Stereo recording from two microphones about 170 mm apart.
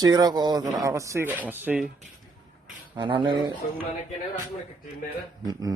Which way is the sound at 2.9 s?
30° right (ahead or behind).